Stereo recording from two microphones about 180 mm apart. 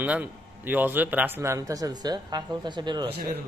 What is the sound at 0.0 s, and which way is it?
A man's voice, 10° right (ahead or behind).